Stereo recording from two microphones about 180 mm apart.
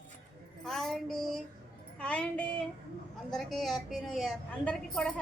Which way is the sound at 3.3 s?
Centre (ahead or behind).